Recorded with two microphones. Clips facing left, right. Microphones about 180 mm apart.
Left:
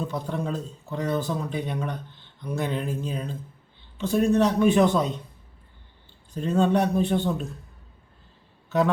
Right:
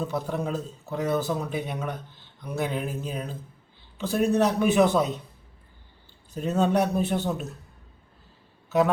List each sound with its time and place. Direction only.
0.0 s a man's voice: 5° right (ahead or behind)
6.3 s a man's voice: 5° right (ahead or behind)